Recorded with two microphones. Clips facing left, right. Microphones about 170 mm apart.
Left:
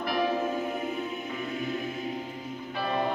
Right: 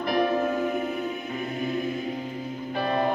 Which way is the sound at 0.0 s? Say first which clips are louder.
Right 4 dB; 50° right (ahead or behind).